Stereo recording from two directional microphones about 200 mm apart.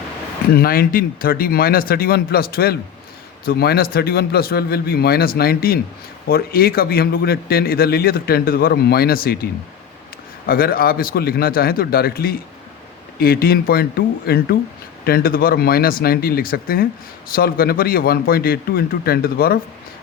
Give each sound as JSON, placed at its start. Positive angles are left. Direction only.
{"t": 0.5, "sound": "a man's voice", "side_deg": 50}